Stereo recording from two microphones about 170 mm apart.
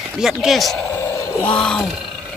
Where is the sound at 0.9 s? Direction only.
15° left (ahead or behind).